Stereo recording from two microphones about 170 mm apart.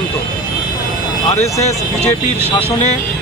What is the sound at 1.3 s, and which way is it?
Speech, 40° left (ahead or behind).